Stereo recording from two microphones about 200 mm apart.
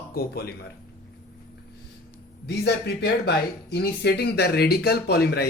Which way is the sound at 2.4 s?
55° left (ahead or behind).